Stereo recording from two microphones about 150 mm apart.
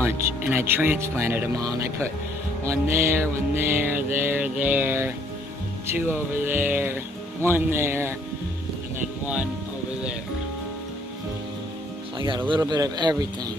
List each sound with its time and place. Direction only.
0.0 s music: 15° right (ahead or behind)
12.4 s speech: 30° right (ahead or behind)